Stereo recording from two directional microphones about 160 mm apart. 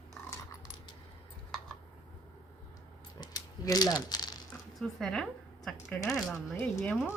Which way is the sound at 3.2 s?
25° left (ahead or behind).